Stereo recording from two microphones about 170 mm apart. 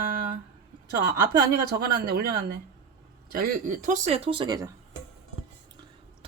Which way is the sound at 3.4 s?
50° right (ahead or behind).